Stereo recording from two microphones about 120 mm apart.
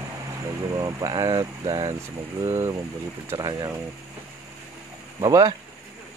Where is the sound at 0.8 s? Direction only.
30° right (ahead or behind).